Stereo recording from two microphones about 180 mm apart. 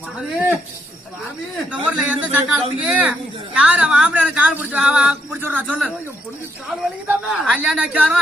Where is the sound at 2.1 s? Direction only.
5° right (ahead or behind).